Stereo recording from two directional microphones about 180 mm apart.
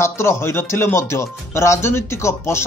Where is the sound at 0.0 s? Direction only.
15° left (ahead or behind).